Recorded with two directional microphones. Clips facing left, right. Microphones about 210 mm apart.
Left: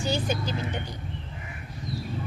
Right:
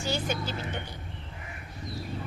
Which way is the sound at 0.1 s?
15° left (ahead or behind).